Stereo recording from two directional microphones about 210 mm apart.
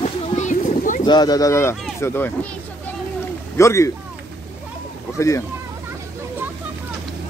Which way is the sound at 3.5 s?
15° left (ahead or behind).